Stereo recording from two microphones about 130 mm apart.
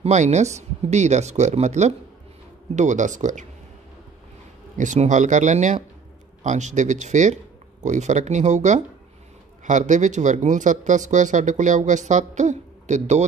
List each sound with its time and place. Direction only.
0.0 s speech: 60° right (ahead or behind)
4.7 s speech: 65° right (ahead or behind)